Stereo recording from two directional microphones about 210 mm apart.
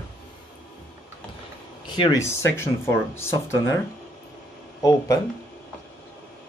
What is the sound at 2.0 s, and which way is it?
Speech, 15° left (ahead or behind).